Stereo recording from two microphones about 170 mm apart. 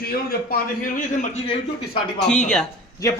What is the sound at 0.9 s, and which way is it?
Speech, 45° left (ahead or behind).